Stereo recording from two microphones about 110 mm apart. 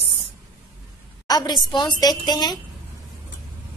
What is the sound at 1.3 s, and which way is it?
A woman's voice, 35° left (ahead or behind).